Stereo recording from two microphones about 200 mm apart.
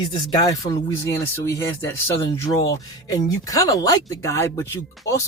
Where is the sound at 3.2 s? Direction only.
15° left (ahead or behind).